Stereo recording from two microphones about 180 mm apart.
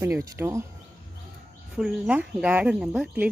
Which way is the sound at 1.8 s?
5° right (ahead or behind).